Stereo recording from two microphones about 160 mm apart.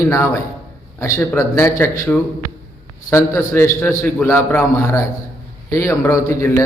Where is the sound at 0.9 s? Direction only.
15° left (ahead or behind).